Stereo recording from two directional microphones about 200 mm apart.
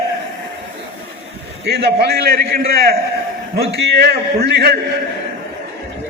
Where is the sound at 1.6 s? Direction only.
55° right (ahead or behind).